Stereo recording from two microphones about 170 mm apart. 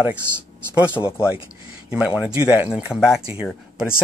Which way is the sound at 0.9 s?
15° left (ahead or behind).